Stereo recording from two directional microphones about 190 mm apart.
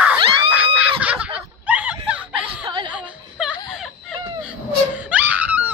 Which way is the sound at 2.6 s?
25° right (ahead or behind).